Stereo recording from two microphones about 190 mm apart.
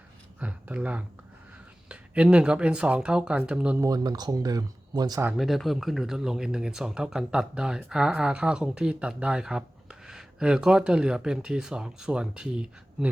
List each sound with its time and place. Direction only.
0.3 s speech: 5° right (ahead or behind)
3.8 s speech: 20° right (ahead or behind)
5.4 s speech: centre (ahead or behind)